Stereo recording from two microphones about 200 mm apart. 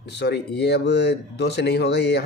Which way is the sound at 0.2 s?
55° left (ahead or behind).